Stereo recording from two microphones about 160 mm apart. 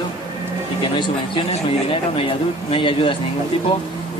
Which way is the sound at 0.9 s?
30° left (ahead or behind).